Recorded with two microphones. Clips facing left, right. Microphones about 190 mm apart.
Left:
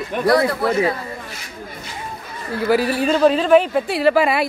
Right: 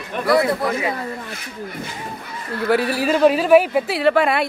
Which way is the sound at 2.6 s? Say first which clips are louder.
Left 1 dB; centre (ahead or behind).